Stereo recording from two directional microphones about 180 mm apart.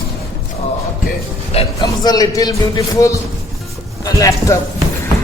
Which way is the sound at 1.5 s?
20° left (ahead or behind).